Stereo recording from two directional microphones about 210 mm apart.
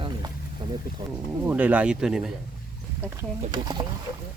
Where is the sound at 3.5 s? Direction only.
20° right (ahead or behind).